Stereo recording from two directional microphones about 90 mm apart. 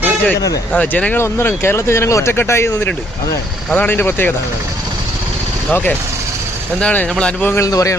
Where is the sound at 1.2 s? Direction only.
25° left (ahead or behind).